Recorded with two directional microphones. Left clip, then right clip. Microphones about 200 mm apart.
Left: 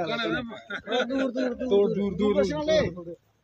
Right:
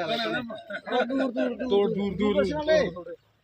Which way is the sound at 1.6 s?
50° left (ahead or behind).